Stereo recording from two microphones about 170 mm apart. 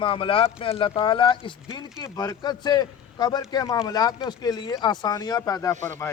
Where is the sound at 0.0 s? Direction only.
30° left (ahead or behind).